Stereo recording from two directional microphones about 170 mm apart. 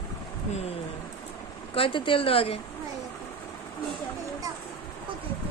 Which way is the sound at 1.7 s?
30° left (ahead or behind).